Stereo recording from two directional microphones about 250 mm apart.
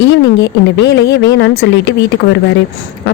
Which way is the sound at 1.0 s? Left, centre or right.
Left.